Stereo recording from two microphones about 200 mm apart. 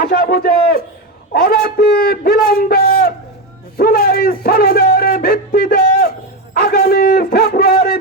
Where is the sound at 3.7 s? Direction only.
50° left (ahead or behind).